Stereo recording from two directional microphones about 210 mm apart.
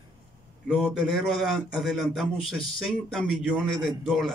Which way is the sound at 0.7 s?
Centre (ahead or behind).